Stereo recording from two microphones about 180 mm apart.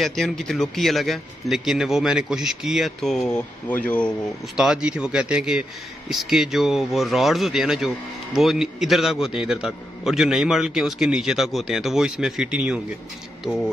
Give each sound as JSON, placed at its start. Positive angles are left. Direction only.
{"t": 0.0, "sound": "speech", "side_deg": 0}
{"t": 4.6, "sound": "speech", "side_deg": -5}